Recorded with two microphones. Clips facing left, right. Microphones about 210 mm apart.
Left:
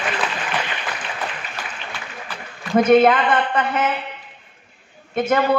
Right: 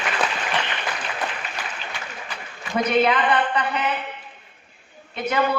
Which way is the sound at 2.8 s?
50° left (ahead or behind).